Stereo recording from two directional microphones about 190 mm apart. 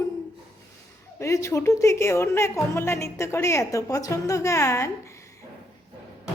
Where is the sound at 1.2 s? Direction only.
15° left (ahead or behind).